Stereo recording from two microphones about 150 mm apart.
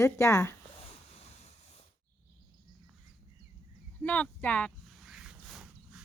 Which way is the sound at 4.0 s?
10° left (ahead or behind).